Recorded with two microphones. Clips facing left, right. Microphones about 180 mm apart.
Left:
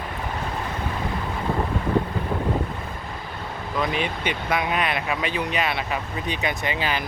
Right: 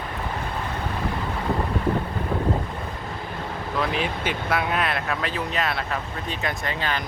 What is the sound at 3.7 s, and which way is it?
Speech, centre (ahead or behind).